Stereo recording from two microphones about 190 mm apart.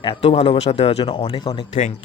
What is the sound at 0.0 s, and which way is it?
Speech, 30° left (ahead or behind).